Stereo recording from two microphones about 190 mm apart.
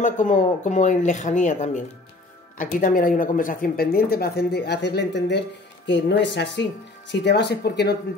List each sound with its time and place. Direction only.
0.0 s speech: 40° left (ahead or behind); by 7.9 s 60° left (ahead or behind)